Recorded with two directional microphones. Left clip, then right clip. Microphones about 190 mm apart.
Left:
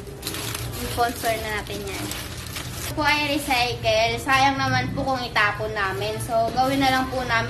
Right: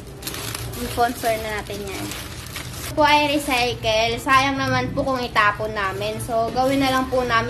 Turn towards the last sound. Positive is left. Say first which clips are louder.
# right 3 dB
turn(degrees=-35)  # may be behind; listen again after turning